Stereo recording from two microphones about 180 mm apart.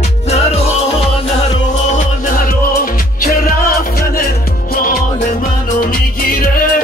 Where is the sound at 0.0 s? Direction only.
35° left (ahead or behind).